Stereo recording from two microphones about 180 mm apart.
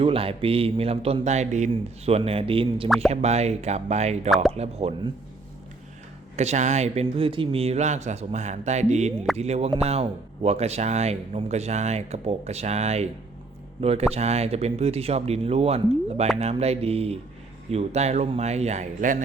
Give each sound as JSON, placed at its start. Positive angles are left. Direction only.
{"t": 0.0, "sound": "speech", "side_deg": -30}
{"t": 6.3, "sound": "speech", "side_deg": -40}